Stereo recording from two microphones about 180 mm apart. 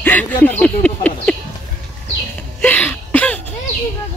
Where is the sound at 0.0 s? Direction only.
10° left (ahead or behind).